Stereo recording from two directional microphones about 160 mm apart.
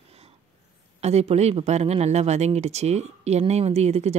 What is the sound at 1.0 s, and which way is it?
Speech, 40° right (ahead or behind).